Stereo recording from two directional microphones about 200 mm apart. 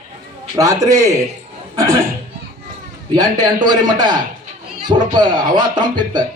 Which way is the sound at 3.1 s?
20° right (ahead or behind).